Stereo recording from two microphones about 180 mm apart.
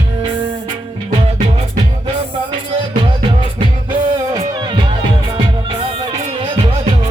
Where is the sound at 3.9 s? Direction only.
25° right (ahead or behind).